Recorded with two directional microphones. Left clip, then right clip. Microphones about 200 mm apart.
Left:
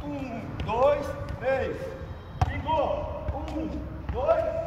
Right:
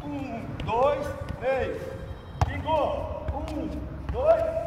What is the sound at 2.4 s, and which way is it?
Basketball bounce, 20° right (ahead or behind).